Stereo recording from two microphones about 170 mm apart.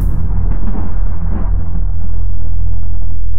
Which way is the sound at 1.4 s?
10° left (ahead or behind).